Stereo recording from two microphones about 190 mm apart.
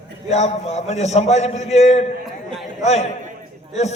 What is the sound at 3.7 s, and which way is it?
Speech, 35° left (ahead or behind).